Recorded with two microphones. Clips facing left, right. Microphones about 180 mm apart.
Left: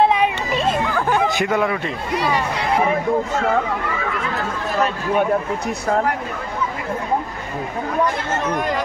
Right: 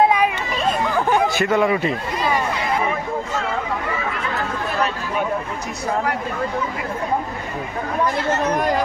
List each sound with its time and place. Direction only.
0.2 s a sound: 30° left (ahead or behind)
1.3 s speech: 15° left (ahead or behind)
1.6 s speech: 5° right (ahead or behind)